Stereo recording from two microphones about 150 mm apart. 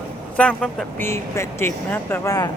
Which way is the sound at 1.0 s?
15° left (ahead or behind).